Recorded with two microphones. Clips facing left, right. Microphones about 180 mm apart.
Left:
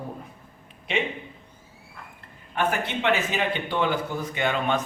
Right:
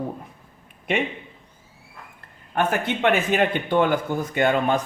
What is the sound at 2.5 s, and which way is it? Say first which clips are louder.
Speech: right 3 dB; 55° right (ahead or behind).